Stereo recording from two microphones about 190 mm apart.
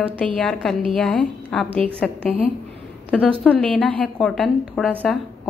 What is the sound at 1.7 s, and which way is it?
Speech, 30° right (ahead or behind).